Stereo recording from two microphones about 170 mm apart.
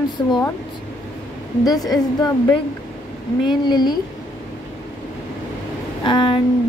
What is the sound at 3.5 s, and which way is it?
Speech, 25° left (ahead or behind).